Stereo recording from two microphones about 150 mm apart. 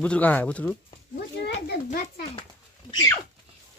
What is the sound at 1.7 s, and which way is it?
Speech, 90° left.